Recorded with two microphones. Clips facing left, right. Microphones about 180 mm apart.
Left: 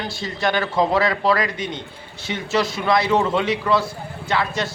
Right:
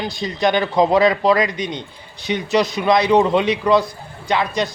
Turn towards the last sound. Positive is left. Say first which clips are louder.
# right 3 dB
turn(degrees=-15)  # may be behind; listen again after turning